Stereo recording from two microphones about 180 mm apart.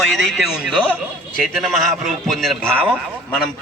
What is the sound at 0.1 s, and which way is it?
A man's voice, centre (ahead or behind).